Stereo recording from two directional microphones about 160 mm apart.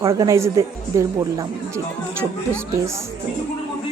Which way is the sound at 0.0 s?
20° right (ahead or behind).